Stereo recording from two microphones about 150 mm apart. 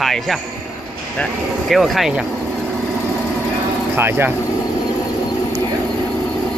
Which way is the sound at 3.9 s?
15° right (ahead or behind).